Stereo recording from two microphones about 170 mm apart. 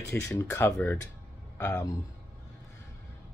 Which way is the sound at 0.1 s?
10° left (ahead or behind).